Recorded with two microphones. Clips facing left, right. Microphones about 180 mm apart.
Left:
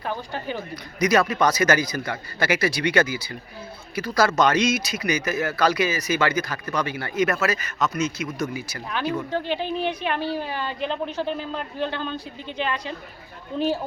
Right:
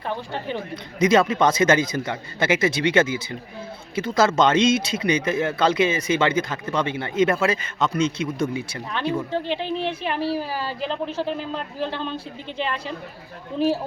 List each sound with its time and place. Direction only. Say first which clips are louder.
0.0 s speech: right 1 dB; centre (ahead or behind)
0.9 s speech: right 2 dB; 25° right (ahead or behind)
9.3 s speech: right 1 dB; centre (ahead or behind)